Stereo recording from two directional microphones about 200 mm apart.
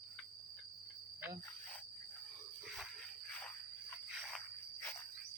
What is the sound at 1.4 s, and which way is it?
Cricket, 10° left (ahead or behind).